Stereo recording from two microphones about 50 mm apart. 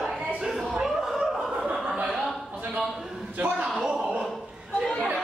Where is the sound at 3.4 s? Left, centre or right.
Right.